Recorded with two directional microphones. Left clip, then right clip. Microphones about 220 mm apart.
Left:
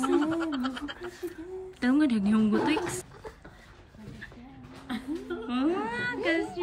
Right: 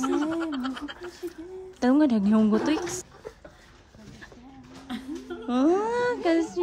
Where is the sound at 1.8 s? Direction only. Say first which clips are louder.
Right 4 dB; 20° right (ahead or behind).